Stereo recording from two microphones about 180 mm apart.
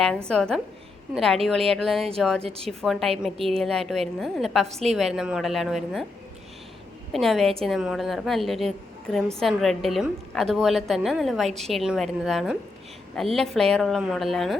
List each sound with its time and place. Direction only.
0.3 s a woman's voice: 5° left (ahead or behind)
2.4 s a woman's voice: 35° right (ahead or behind)
2.6 s a woman's voice: centre (ahead or behind)
4.7 s a woman's voice: 35° right (ahead or behind)
4.9 s a woman's voice: centre (ahead or behind)
7.1 s a woman's voice: centre (ahead or behind)